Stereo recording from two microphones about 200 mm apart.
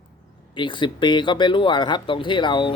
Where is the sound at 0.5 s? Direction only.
25° left (ahead or behind).